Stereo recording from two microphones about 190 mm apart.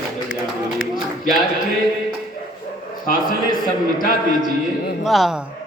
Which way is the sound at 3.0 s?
45° left (ahead or behind).